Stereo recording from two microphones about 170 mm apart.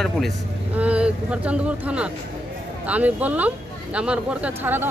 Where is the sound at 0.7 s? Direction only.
5° right (ahead or behind).